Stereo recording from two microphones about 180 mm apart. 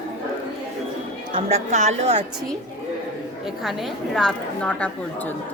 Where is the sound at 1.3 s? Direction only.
40° right (ahead or behind).